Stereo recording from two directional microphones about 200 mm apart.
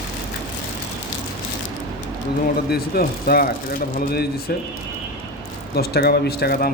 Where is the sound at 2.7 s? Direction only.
50° left (ahead or behind).